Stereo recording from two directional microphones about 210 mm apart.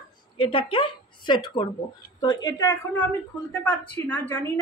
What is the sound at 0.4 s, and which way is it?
A woman's voice, 25° left (ahead or behind).